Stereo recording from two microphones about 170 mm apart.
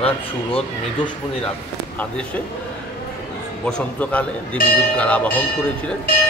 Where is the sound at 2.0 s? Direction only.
10° left (ahead or behind).